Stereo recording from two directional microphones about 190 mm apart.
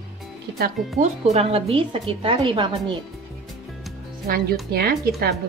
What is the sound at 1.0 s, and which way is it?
A woman's voice, 35° right (ahead or behind).